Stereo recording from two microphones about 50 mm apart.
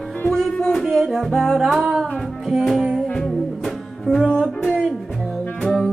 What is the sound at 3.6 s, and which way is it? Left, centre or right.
Music, centre.